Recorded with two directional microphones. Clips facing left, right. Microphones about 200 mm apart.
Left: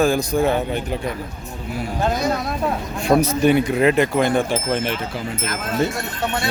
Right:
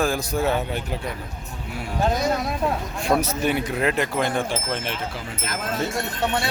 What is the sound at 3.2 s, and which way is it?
Speech, centre (ahead or behind).